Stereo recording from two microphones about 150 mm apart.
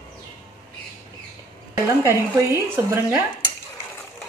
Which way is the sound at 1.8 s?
15° right (ahead or behind).